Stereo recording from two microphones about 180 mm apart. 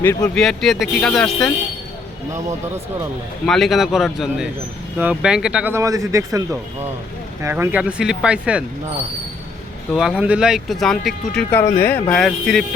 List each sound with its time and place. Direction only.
0.0 s speech: 15° left (ahead or behind)
0.3 s speech: centre (ahead or behind)
3.4 s speech: centre (ahead or behind)
9.9 s speech: 5° right (ahead or behind)
11.6 s speech: 10° left (ahead or behind)